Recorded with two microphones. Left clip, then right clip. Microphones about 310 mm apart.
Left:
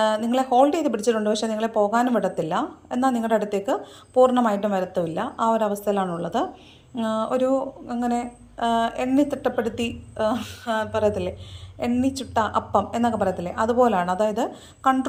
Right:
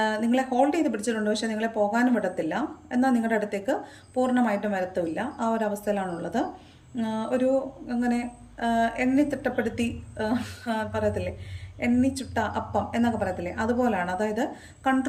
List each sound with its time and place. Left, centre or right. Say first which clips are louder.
0.0 s speech: left 4 dB; centre